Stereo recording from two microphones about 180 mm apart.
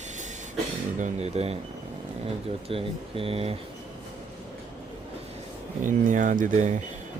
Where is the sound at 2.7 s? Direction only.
30° right (ahead or behind).